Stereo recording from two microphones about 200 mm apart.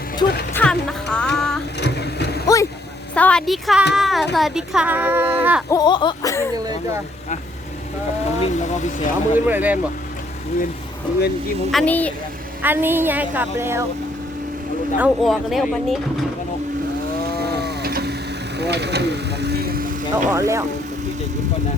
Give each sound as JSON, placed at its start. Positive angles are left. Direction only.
{"t": 0.2, "sound": "speech", "side_deg": 25}
{"t": 0.5, "sound": "a sound", "side_deg": 5}
{"t": 1.8, "sound": "a sound", "side_deg": 55}
{"t": 2.5, "sound": "vehicle", "side_deg": 15}
{"t": 3.2, "sound": "speech", "side_deg": 5}
{"t": 5.7, "sound": "a sound", "side_deg": 20}
{"t": 8.4, "sound": "speech", "side_deg": 35}
{"t": 9.5, "sound": "speech", "side_deg": -10}
{"t": 11.7, "sound": "a woman's voice", "side_deg": 5}
{"t": 12.6, "sound": "speech", "side_deg": -10}
{"t": 14.9, "sound": "speech", "side_deg": -5}
{"t": 17.3, "sound": "a sound", "side_deg": -55}
{"t": 20.3, "sound": "speech", "side_deg": -15}